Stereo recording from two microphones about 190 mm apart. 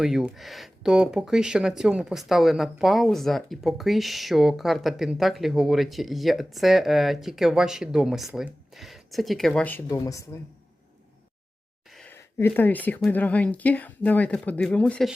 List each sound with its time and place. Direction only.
0.0 s speech: centre (ahead or behind); by 10.2 s 15° left (ahead or behind)
11.9 s a sound: centre (ahead or behind)
12.1 s speech: 10° left (ahead or behind)